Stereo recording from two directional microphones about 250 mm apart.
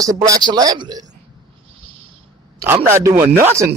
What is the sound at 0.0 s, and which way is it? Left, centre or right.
Speech, centre.